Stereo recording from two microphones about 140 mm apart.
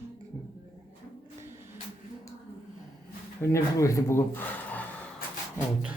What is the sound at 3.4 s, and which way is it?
Speech, 20° left (ahead or behind).